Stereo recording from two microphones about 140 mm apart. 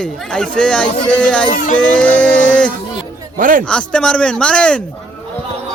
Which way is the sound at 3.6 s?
10° left (ahead or behind).